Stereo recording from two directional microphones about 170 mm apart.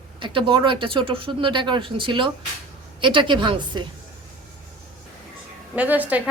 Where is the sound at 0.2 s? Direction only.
30° right (ahead or behind).